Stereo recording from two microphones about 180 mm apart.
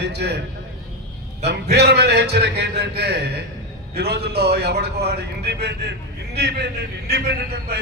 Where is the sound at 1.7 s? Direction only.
65° right (ahead or behind).